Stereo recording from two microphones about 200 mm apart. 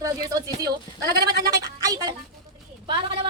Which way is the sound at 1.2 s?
55° right (ahead or behind).